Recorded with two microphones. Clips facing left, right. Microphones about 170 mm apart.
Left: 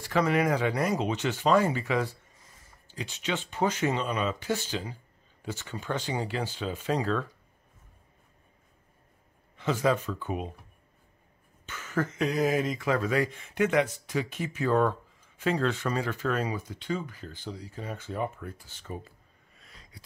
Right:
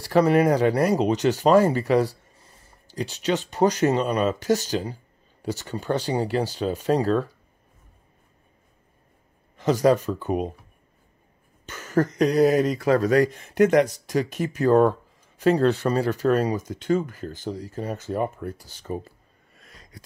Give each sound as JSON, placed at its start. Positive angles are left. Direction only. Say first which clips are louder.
{"t": 0.0, "sound": "speech", "louder": "right 7 dB", "side_deg": -35}
{"t": 9.6, "sound": "speech", "louder": "right 7 dB", "side_deg": -40}
{"t": 11.6, "sound": "speech", "louder": "right 8 dB", "side_deg": -40}
{"t": 19.6, "sound": "a sound", "louder": "right 5 dB", "side_deg": -45}